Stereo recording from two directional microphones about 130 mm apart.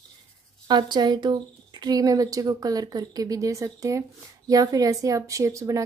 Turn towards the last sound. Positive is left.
turn(degrees=-25)  # may be behind; listen again after turning